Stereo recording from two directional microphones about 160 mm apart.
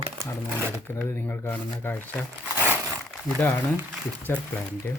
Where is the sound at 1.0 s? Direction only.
15° left (ahead or behind).